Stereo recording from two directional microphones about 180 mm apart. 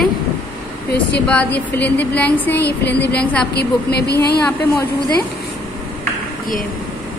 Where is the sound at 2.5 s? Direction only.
65° left (ahead or behind).